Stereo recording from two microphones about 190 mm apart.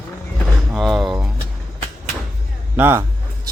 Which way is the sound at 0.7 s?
Centre (ahead or behind).